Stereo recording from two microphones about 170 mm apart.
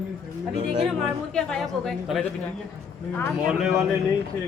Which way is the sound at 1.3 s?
Centre (ahead or behind).